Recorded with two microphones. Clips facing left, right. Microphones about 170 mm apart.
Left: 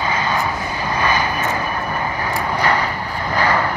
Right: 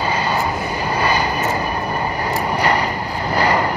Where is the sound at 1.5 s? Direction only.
40° right (ahead or behind).